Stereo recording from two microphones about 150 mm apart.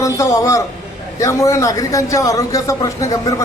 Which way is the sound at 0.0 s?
20° left (ahead or behind).